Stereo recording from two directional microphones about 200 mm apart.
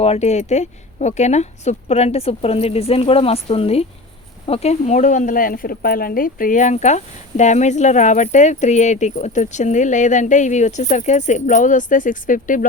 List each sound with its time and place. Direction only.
0.0 s speech: 30° left (ahead or behind)